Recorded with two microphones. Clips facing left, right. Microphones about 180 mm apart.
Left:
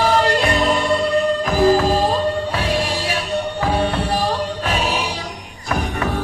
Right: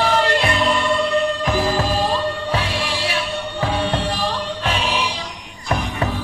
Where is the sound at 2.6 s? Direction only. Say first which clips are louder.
Left 3 dB; 40° left (ahead or behind).